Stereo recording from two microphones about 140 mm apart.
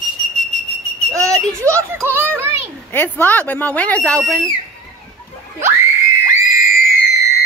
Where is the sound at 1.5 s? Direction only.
20° right (ahead or behind).